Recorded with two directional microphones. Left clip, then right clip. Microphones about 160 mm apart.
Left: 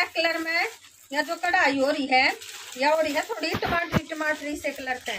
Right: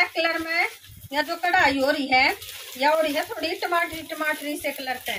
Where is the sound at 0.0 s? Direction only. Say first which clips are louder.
Right 2 dB; 10° left (ahead or behind).